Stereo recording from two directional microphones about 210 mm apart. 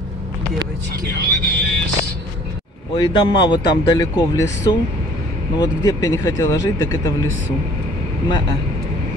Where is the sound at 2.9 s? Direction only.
20° left (ahead or behind).